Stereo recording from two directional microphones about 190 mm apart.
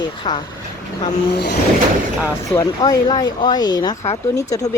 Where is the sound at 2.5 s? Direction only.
20° left (ahead or behind).